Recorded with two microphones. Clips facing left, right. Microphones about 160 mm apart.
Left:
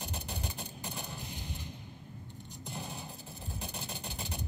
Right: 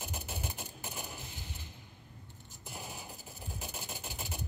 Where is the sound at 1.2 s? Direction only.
20° left (ahead or behind).